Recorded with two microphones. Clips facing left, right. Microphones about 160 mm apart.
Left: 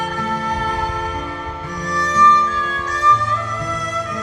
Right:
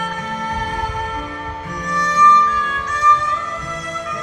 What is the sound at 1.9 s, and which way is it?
Music, 35° left (ahead or behind).